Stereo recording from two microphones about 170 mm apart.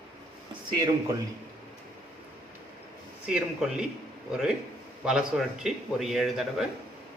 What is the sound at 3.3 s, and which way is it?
A man's voice, 5° right (ahead or behind).